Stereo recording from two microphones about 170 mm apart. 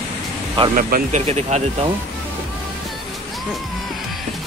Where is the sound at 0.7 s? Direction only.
55° right (ahead or behind).